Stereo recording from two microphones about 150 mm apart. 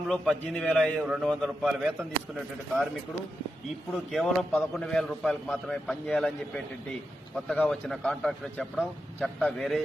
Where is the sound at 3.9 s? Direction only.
Centre (ahead or behind).